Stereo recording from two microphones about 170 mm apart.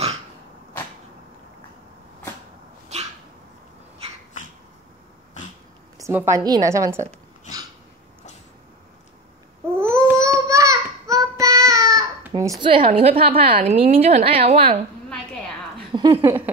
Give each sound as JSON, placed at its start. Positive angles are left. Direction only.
{"t": 5.9, "sound": "a woman's voice", "side_deg": -15}
{"t": 9.8, "sound": "babbling", "side_deg": -15}
{"t": 13.6, "sound": "a woman's voice", "side_deg": -40}
{"t": 15.0, "sound": "a sound", "side_deg": 5}
{"t": 15.9, "sound": "speech", "side_deg": -30}